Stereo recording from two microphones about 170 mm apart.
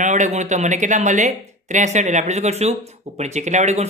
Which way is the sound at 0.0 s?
45° right (ahead or behind).